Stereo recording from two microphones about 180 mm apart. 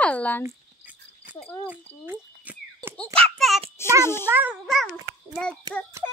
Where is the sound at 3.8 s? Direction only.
15° left (ahead or behind).